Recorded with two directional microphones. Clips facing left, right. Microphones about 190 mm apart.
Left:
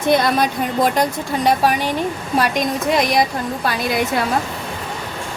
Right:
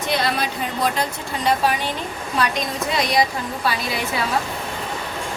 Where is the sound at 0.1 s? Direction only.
50° left (ahead or behind).